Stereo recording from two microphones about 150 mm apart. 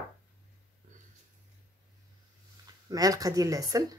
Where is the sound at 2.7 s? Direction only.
25° right (ahead or behind).